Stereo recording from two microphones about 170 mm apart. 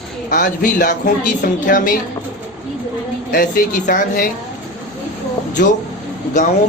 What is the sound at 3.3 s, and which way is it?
A woman's voice, 55° left (ahead or behind).